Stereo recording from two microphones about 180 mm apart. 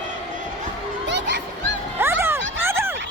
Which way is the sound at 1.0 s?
75° right (ahead or behind).